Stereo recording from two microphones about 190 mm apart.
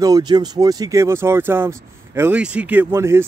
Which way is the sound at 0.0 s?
20° right (ahead or behind).